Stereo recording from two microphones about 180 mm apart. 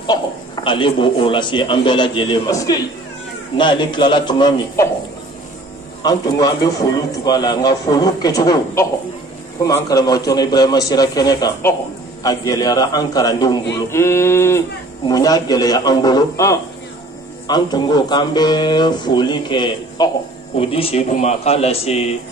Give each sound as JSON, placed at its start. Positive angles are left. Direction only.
{"t": 0.7, "sound": "speech", "side_deg": 30}
{"t": 6.0, "sound": "speech", "side_deg": 20}
{"t": 13.8, "sound": "a sound", "side_deg": 15}
{"t": 15.0, "sound": "a man's voice", "side_deg": 20}